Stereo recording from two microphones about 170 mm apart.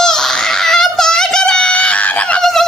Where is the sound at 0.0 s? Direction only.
5° left (ahead or behind).